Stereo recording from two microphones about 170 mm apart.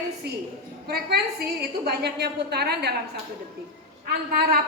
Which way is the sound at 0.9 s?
70° right (ahead or behind).